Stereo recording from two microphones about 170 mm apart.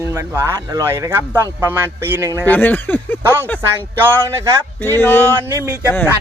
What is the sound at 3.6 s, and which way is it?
Speech, 15° right (ahead or behind).